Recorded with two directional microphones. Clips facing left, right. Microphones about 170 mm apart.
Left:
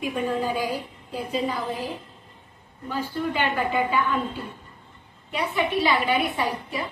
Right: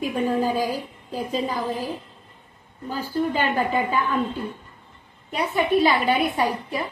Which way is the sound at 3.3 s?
40° right (ahead or behind).